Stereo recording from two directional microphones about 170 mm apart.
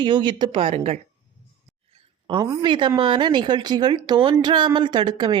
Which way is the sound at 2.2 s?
25° right (ahead or behind).